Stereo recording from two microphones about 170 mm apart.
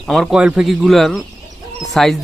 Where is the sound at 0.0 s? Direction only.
Centre (ahead or behind).